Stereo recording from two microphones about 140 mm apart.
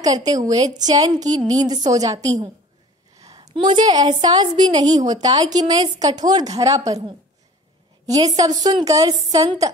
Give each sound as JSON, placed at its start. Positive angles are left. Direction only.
{"t": 0.0, "sound": "a woman's voice", "side_deg": -25}
{"t": 3.2, "sound": "a sound", "side_deg": -25}
{"t": 3.5, "sound": "a woman's voice", "side_deg": -35}
{"t": 8.1, "sound": "a woman's voice", "side_deg": -25}